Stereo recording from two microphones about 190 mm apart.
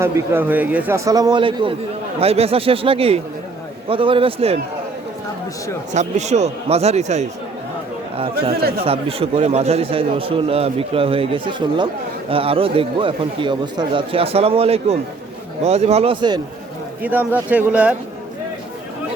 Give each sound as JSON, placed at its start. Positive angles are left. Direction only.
{"t": 0.0, "sound": "a man's voice", "side_deg": -10}
{"t": 5.9, "sound": "speech", "side_deg": -40}
{"t": 8.8, "sound": "a man's voice", "side_deg": -30}
{"t": 17.0, "sound": "a man's voice", "side_deg": -10}